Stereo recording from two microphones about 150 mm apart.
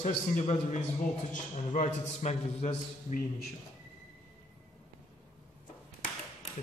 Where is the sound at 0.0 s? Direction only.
50° left (ahead or behind).